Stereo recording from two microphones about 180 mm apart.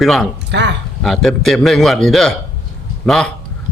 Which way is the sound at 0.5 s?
75° right (ahead or behind).